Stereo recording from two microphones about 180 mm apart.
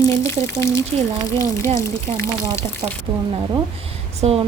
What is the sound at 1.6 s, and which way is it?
Speech, 40° right (ahead or behind).